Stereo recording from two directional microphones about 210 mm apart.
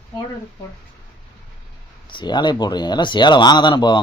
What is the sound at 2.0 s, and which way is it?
Speech, 20° left (ahead or behind).